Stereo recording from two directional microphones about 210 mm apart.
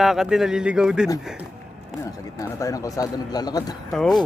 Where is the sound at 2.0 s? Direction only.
15° left (ahead or behind).